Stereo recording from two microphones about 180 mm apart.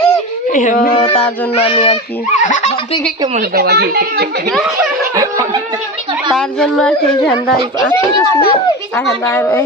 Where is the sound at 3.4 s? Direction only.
60° right (ahead or behind).